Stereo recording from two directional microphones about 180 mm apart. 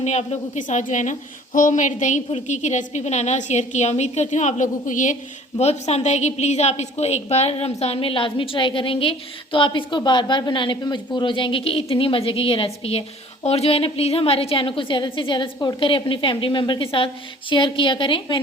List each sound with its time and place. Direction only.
0.0 s a woman's voice: 40° left (ahead or behind)